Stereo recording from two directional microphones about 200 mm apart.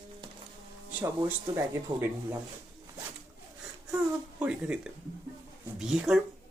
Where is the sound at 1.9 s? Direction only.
20° right (ahead or behind).